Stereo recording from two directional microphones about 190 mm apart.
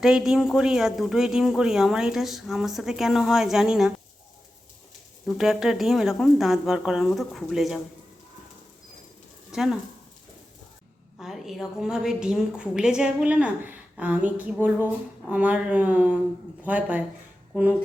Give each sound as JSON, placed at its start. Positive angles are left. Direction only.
{"t": 0.0, "sound": "speech", "side_deg": -5}
{"t": 5.2, "sound": "speech", "side_deg": 0}
{"t": 9.5, "sound": "speech", "side_deg": 0}
{"t": 11.2, "sound": "a woman's voice", "side_deg": 0}